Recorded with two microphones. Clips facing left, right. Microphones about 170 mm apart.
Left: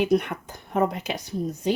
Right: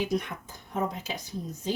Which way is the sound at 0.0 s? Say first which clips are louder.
Left 7 dB; 65° left (ahead or behind).